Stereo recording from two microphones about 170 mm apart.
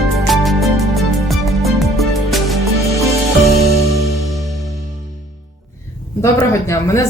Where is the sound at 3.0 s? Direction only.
20° right (ahead or behind).